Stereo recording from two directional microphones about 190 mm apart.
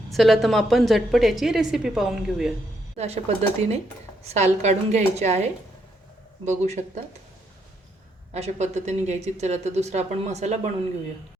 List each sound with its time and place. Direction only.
0.1 s a woman's voice: centre (ahead or behind)
3.0 s speech: 35° right (ahead or behind)
8.3 s speech: 35° right (ahead or behind)